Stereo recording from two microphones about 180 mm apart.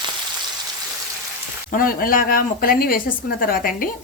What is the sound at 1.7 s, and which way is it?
A woman's voice, 50° left (ahead or behind).